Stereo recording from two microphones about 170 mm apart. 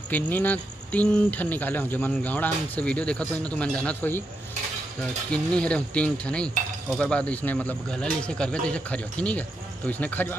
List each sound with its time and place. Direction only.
0.1 s speech: 10° left (ahead or behind)
5.3 s speech: 5° left (ahead or behind)